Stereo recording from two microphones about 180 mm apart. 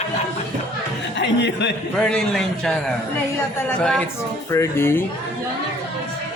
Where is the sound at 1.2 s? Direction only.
75° left (ahead or behind).